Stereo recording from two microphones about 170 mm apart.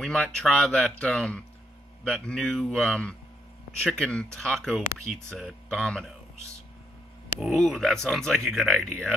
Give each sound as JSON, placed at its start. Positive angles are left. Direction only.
{"t": 0.0, "sound": "speech", "side_deg": 5}
{"t": 7.3, "sound": "speech", "side_deg": 0}